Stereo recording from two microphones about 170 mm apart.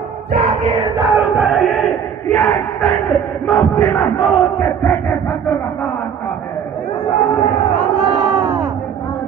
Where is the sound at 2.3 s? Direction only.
15° left (ahead or behind).